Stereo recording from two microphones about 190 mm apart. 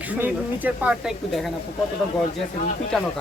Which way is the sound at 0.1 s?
10° right (ahead or behind).